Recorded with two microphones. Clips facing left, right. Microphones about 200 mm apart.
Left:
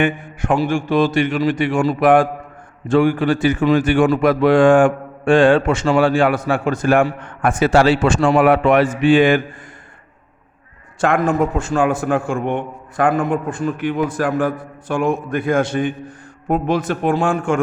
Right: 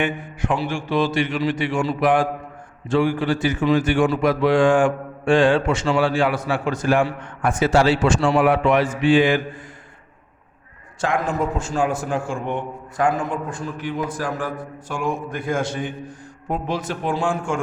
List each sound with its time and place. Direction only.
0.0 s a man's voice: 50° left (ahead or behind)
11.0 s a man's voice: 60° left (ahead or behind)